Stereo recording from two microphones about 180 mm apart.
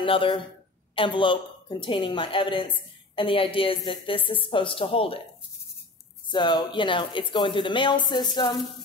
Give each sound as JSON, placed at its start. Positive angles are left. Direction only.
{"t": 0.0, "sound": "a woman's voice", "side_deg": 30}
{"t": 6.3, "sound": "a woman's voice", "side_deg": 25}